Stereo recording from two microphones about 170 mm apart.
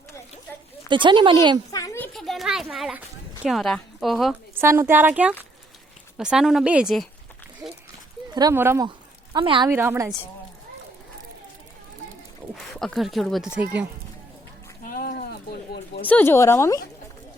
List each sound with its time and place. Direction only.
0.9 s speech: 30° right (ahead or behind)
1.7 s a sound: 20° left (ahead or behind)
2.1 s a sound: centre (ahead or behind)
3.4 s a woman's voice: centre (ahead or behind)
4.6 s speech: 15° right (ahead or behind)
7.6 s a sound: 20° right (ahead or behind)
8.3 s speech: 25° right (ahead or behind)
9.3 s speech: 30° right (ahead or behind)
9.6 s speech: 15° right (ahead or behind)
12.5 s speech: centre (ahead or behind)
14.8 s a sound: 60° left (ahead or behind)
16.0 s speech: 10° left (ahead or behind)